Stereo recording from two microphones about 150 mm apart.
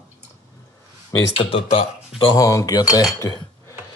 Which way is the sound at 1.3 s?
40° left (ahead or behind).